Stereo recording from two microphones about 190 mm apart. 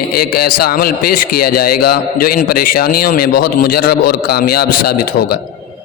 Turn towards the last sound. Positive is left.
turn(degrees=50)  # may be behind; listen again after turning